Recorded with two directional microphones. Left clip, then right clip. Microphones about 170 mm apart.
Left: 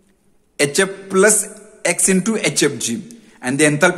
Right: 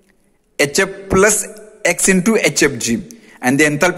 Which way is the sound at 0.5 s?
30° right (ahead or behind).